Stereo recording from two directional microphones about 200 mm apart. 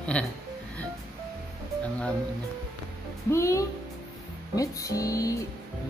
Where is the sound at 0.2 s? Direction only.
5° left (ahead or behind).